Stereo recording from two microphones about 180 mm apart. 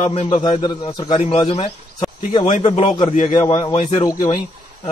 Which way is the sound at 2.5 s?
35° left (ahead or behind).